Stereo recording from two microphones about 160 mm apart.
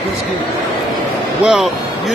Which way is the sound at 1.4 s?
5° right (ahead or behind).